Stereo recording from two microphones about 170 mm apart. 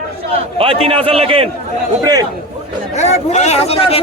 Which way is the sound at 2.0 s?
20° right (ahead or behind).